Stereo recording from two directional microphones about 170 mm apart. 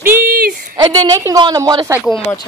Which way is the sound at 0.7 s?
25° right (ahead or behind).